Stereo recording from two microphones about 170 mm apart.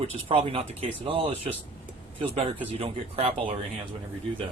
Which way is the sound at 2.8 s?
35° right (ahead or behind).